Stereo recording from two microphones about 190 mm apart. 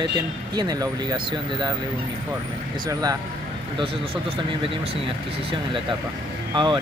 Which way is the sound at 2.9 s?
20° right (ahead or behind).